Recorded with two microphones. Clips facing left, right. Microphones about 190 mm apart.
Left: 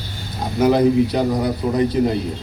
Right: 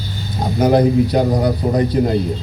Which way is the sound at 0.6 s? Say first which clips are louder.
Right 1 dB; 40° right (ahead or behind).